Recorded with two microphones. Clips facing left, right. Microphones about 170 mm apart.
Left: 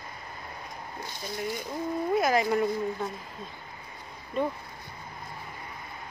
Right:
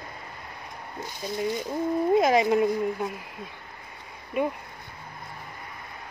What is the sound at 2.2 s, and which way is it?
A woman's voice, 20° right (ahead or behind).